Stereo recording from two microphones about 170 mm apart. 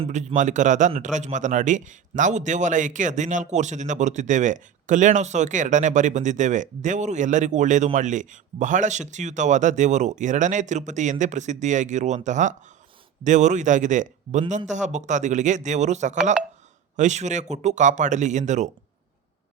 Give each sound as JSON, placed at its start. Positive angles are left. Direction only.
{"t": 0.0, "sound": "speech", "side_deg": -40}